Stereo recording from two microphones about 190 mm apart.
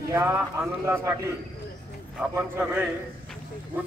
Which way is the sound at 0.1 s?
15° right (ahead or behind).